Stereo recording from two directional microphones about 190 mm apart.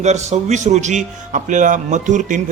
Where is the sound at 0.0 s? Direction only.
35° right (ahead or behind).